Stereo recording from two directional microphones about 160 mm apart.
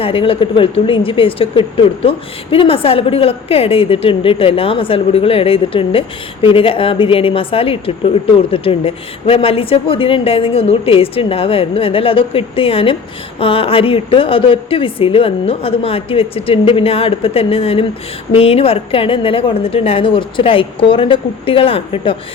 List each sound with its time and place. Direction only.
0.0 s speech: 35° left (ahead or behind)